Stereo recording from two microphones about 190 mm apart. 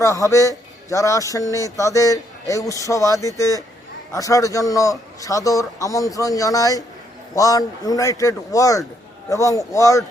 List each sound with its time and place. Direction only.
0.0 s a man's voice: 15° left (ahead or behind)